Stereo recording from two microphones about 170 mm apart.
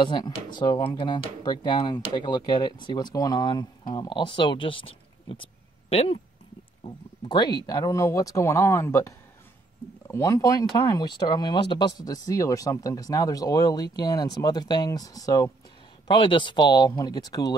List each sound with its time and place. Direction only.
0.0 s speech: 25° left (ahead or behind)